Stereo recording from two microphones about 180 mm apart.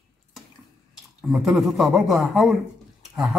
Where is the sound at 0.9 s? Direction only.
Centre (ahead or behind).